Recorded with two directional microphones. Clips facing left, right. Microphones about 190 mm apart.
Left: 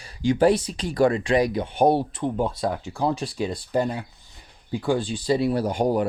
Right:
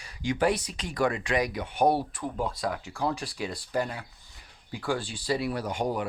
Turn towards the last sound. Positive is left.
turn(degrees=35)  # may be behind; listen again after turning